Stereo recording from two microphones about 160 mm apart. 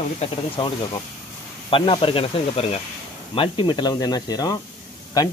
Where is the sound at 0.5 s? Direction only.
30° left (ahead or behind).